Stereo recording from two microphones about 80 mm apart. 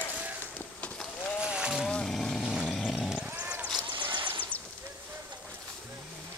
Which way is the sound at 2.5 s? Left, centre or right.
Centre.